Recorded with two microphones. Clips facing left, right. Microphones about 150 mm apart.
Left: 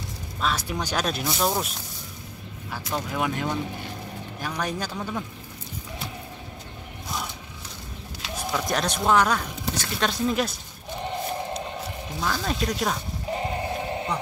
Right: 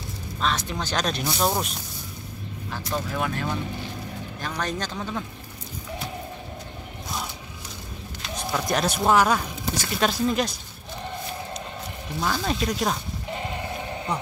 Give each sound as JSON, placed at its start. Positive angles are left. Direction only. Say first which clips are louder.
{"t": 0.4, "sound": "speech", "louder": "even", "side_deg": 5}
{"t": 2.7, "sound": "speech", "louder": "even", "side_deg": 15}
{"t": 8.4, "sound": "speech", "louder": "right 1 dB", "side_deg": 0}
{"t": 12.2, "sound": "speech", "louder": "right 2 dB", "side_deg": -5}
{"t": 13.3, "sound": "a sound", "louder": "left 4 dB", "side_deg": 30}